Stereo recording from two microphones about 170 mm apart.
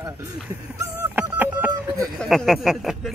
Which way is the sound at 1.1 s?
10° right (ahead or behind).